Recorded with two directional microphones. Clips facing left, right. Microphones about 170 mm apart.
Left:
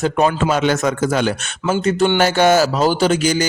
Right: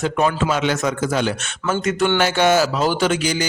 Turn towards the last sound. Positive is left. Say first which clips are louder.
# left 4 dB
turn(degrees=45)  # may be behind; listen again after turning